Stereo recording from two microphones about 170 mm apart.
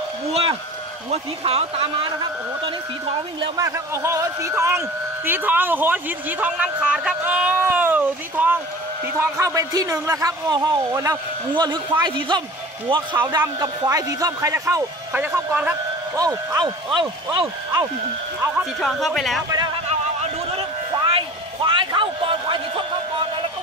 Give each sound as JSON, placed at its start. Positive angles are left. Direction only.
{"t": 0.3, "sound": "a sound", "side_deg": -35}
{"t": 1.1, "sound": "speech", "side_deg": -35}
{"t": 3.3, "sound": "speech", "side_deg": -20}
{"t": 16.2, "sound": "speech", "side_deg": -20}
{"t": 18.8, "sound": "speech", "side_deg": 0}
{"t": 20.5, "sound": "a sound", "side_deg": -30}